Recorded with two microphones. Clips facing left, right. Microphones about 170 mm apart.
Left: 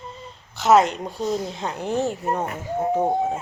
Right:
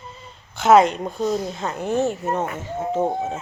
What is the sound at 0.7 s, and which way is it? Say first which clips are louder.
Speech: right 3 dB; 55° right (ahead or behind).